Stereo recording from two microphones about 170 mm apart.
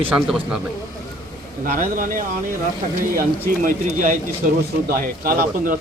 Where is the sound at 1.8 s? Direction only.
55° right (ahead or behind).